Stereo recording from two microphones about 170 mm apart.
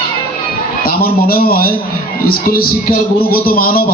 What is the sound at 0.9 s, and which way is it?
Speech, 60° left (ahead or behind).